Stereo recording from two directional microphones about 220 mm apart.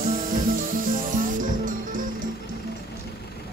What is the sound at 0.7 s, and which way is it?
Music, 40° right (ahead or behind).